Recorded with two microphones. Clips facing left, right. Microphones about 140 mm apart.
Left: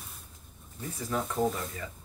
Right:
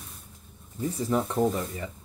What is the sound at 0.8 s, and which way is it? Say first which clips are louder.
Speech: right 7 dB; 25° right (ahead or behind).